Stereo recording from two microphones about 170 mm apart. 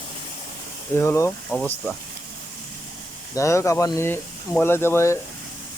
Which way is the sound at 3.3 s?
15° left (ahead or behind).